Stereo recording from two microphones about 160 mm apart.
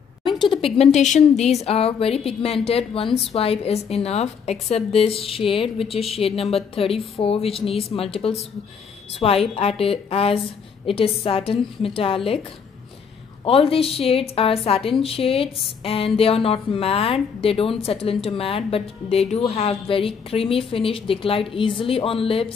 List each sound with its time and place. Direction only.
0.2 s speech: 30° left (ahead or behind)
13.4 s speech: 35° left (ahead or behind)